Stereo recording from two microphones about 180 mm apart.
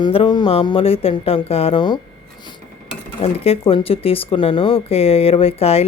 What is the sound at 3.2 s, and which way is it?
A woman's voice, 30° left (ahead or behind).